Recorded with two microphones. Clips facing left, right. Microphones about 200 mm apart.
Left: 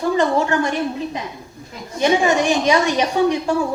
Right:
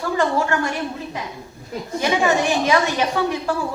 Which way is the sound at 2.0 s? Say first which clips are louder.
Left 3 dB; 15° left (ahead or behind).